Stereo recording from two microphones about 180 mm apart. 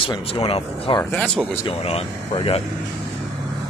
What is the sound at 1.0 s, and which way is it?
Speech, 5° left (ahead or behind).